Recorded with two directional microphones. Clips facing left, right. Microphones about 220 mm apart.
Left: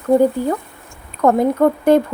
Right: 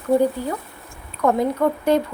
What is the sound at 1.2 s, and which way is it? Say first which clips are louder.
Speech: left 5 dB; 50° left (ahead or behind).